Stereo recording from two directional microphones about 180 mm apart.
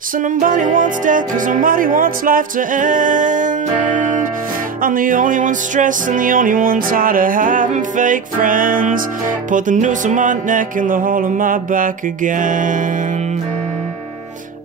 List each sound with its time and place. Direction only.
0.2 s music: 45° right (ahead or behind)